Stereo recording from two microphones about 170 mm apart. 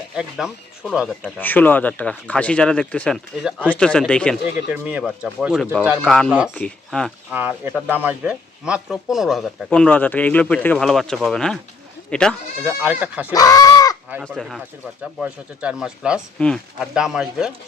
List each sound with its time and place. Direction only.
0.2 s speech: 5° right (ahead or behind)
1.4 s speech: 10° left (ahead or behind)
4.7 s speech: 10° right (ahead or behind)
6.0 s speech: 5° left (ahead or behind)
7.3 s speech: 10° right (ahead or behind); by 12.4 s 5° left (ahead or behind)
12.6 s speech: 10° right (ahead or behind)
13.3 s speech: 20° left (ahead or behind)
14.3 s speech: centre (ahead or behind)